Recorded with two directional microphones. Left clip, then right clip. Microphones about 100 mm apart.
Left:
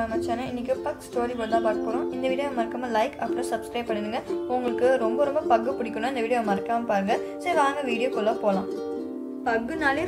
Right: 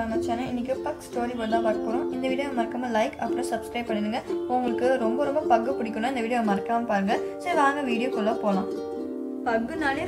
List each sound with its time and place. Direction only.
0.1 s speech: 45° left (ahead or behind)
9.5 s speech: 45° left (ahead or behind)